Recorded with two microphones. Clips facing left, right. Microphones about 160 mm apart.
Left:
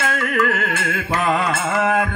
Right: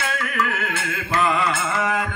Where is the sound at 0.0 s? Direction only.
50° left (ahead or behind).